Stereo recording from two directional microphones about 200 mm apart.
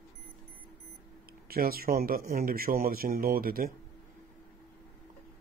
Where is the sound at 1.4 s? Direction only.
50° right (ahead or behind).